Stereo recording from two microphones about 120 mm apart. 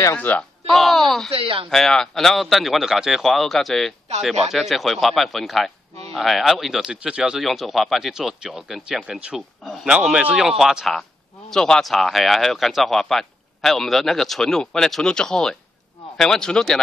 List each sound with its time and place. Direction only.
0.0 s speech: 15° left (ahead or behind)
1.3 s speech: 50° right (ahead or behind)
1.7 s speech: 5° left (ahead or behind)